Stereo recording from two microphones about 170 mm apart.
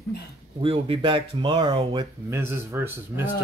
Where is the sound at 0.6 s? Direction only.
30° right (ahead or behind).